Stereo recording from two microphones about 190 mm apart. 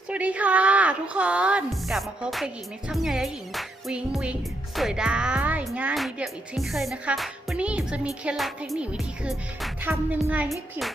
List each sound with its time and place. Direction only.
0.1 s a woman's voice: 5° right (ahead or behind)
2.9 s music: centre (ahead or behind)